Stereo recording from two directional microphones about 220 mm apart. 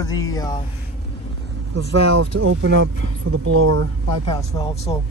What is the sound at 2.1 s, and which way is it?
Speech, 80° right.